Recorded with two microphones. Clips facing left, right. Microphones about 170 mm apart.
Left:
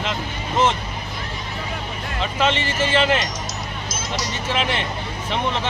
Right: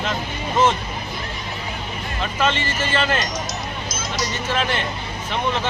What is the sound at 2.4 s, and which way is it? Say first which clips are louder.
Speech: left 1 dB; 25° left (ahead or behind).